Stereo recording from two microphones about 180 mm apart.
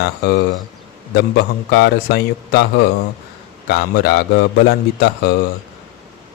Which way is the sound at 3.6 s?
65° left (ahead or behind).